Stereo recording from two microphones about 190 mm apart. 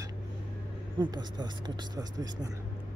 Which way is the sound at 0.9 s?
25° right (ahead or behind).